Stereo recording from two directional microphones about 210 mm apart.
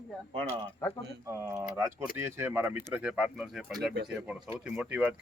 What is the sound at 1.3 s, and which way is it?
Speech, 15° right (ahead or behind).